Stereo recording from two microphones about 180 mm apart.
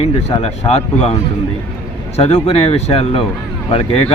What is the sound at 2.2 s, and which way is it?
Speech, 35° left (ahead or behind).